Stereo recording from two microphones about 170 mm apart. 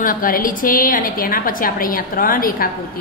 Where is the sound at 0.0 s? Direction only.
55° left (ahead or behind).